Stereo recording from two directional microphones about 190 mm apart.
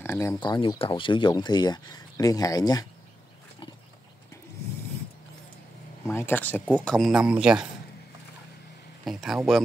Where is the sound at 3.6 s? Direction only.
25° left (ahead or behind).